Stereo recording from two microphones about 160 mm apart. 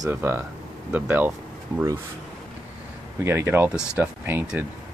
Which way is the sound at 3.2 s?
15° right (ahead or behind).